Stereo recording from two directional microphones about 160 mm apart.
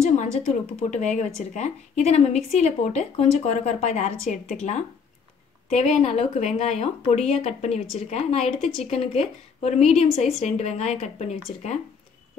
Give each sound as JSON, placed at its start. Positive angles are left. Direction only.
{"t": 0.2, "sound": "a woman's voice", "side_deg": 45}
{"t": 5.7, "sound": "a woman's voice", "side_deg": 45}